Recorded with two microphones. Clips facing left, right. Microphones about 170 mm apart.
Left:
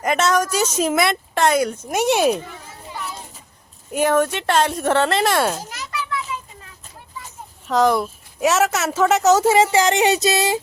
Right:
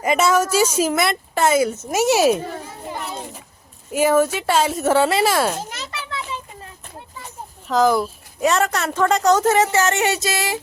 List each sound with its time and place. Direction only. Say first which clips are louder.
0.0 s a woman's voice: right 1 dB; 5° right (ahead or behind)
2.4 s children playing: right 7 dB; 45° right (ahead or behind)
3.9 s a woman's voice: right 1 dB; 5° right (ahead or behind)
5.7 s children playing: left 3 dB; 25° right (ahead or behind)
7.7 s a woman's voice: even; centre (ahead or behind); by 10.6 s 20° left (ahead or behind)